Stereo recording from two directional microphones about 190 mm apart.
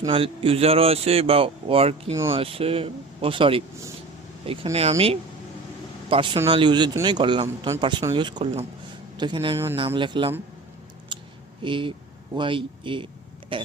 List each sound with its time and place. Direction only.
0.0 s speech: 30° right (ahead or behind)
11.1 s a sound: 25° right (ahead or behind)
11.6 s speech: 25° right (ahead or behind)